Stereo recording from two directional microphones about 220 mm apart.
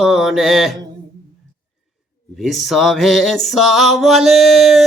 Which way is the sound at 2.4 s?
Centre (ahead or behind).